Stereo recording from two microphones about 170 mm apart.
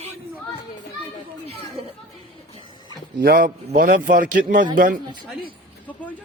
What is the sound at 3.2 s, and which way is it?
A man's voice, 60° right (ahead or behind).